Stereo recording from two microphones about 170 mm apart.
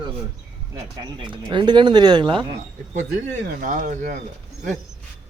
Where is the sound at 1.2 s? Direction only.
30° right (ahead or behind).